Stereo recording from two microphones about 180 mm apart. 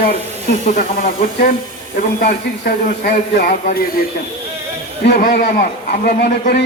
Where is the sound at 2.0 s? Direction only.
55° left (ahead or behind).